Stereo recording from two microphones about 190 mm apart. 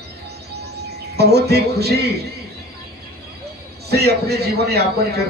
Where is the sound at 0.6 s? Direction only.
60° right (ahead or behind).